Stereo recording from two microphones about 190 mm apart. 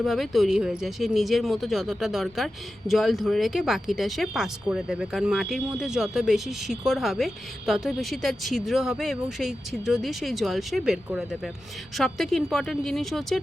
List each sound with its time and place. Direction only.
0.0 s speech: centre (ahead or behind)